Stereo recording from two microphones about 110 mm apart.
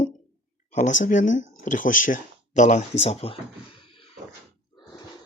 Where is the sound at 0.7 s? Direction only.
90° left.